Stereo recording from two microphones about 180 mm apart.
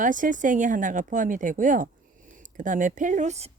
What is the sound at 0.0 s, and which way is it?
Speech, 45° right (ahead or behind).